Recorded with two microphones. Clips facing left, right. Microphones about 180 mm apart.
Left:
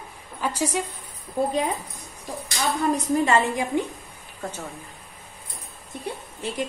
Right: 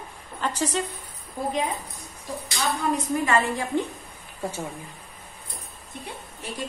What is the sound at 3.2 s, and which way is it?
Speech, 15° left (ahead or behind).